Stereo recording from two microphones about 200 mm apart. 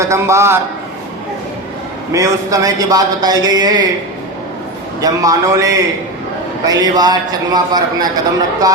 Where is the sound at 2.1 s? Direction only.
15° right (ahead or behind).